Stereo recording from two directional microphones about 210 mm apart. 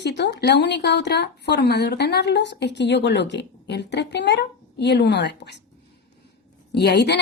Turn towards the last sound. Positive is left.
turn(degrees=55)  # may be behind; listen again after turning